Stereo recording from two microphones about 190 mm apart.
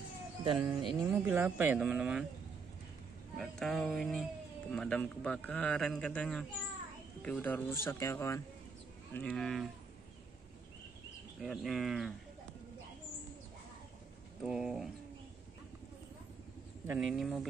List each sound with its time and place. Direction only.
0.7 s speech: 25° right (ahead or behind)
1.0 s speech: 10° right (ahead or behind)
3.3 s speech: centre (ahead or behind)
11.4 s speech: centre (ahead or behind)
14.4 s speech: 5° right (ahead or behind)
16.8 s speech: 5° right (ahead or behind)